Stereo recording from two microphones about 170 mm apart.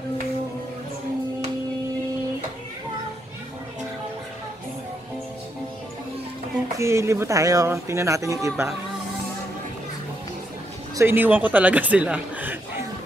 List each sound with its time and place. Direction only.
6.8 s speech: 15° right (ahead or behind)
11.0 s speech: 10° right (ahead or behind)